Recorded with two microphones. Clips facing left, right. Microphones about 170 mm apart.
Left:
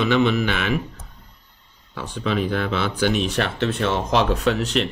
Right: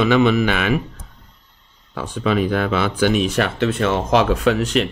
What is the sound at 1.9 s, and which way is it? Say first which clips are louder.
Speech: right 4 dB; 50° right (ahead or behind).